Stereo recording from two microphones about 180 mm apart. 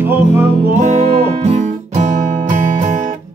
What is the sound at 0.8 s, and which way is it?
Guitar, 40° right (ahead or behind).